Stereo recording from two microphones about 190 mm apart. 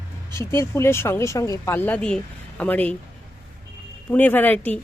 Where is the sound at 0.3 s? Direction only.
15° left (ahead or behind).